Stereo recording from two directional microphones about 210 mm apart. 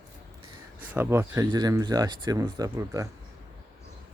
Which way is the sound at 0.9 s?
10° right (ahead or behind).